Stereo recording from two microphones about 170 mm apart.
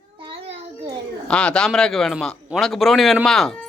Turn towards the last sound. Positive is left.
turn(degrees=0)  # may be behind; listen again after turning